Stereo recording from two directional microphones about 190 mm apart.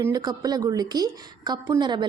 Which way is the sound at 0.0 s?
20° right (ahead or behind).